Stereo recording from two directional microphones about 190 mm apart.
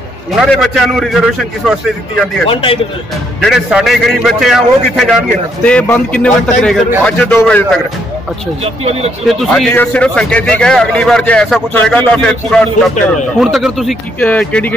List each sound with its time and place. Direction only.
0.4 s a man's voice: centre (ahead or behind)
2.5 s a man's voice: 30° left (ahead or behind)
3.4 s a man's voice: centre (ahead or behind)
9.2 s a man's voice: centre (ahead or behind)